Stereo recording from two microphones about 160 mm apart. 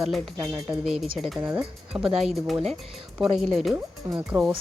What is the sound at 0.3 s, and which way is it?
Speech, 20° right (ahead or behind).